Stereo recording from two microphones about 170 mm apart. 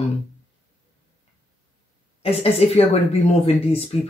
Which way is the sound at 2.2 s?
35° left (ahead or behind).